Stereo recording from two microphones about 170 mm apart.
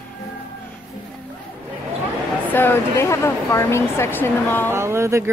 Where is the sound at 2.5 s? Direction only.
10° left (ahead or behind).